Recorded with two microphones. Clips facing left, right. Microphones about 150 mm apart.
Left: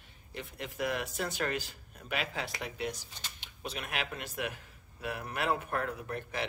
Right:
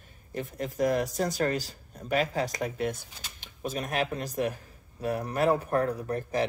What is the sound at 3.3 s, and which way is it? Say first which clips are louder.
A man's voice: right 8 dB; 40° right (ahead or behind).